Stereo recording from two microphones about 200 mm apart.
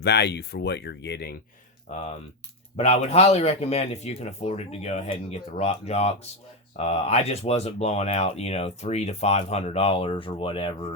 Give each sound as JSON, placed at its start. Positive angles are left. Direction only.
{"t": 0.0, "sound": "speech", "side_deg": 55}
{"t": 1.9, "sound": "speech", "side_deg": 35}